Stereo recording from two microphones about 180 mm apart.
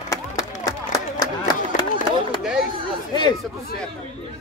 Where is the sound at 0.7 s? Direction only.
20° left (ahead or behind).